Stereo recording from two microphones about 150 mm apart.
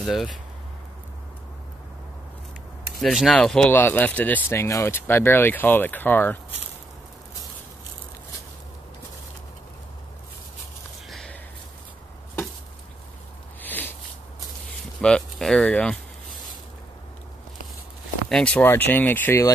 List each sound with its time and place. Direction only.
0.0 s speech: centre (ahead or behind)
3.0 s speech: centre (ahead or behind)
11.1 s a sound: centre (ahead or behind)
13.6 s a sound: 10° left (ahead or behind)
15.0 s speech: 5° left (ahead or behind)
18.3 s speech: 10° left (ahead or behind)